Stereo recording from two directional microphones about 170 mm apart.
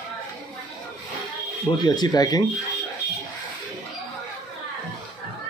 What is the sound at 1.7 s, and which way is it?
Speech, 25° left (ahead or behind).